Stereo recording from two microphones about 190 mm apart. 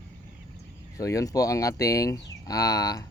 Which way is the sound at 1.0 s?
15° left (ahead or behind).